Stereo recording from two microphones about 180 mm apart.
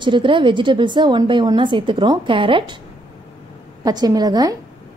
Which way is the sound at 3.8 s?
20° right (ahead or behind).